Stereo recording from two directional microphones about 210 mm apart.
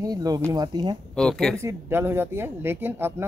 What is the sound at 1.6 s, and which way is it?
A woman's voice, 10° right (ahead or behind).